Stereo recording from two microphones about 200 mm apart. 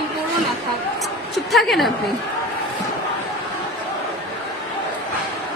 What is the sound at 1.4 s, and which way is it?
Speech, centre (ahead or behind).